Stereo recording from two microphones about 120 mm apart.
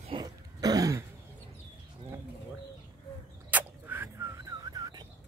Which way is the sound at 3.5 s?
15° right (ahead or behind).